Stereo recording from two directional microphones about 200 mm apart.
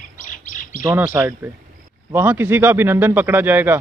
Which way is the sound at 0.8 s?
10° right (ahead or behind).